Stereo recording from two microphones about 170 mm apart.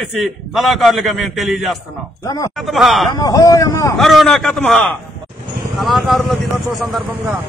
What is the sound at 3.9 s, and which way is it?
A man's voice, centre (ahead or behind).